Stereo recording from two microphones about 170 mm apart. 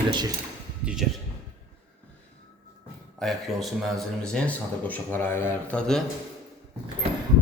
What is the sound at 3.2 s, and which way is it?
A man's voice, centre (ahead or behind).